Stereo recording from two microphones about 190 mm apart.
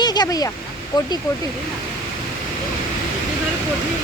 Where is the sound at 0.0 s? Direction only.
20° left (ahead or behind).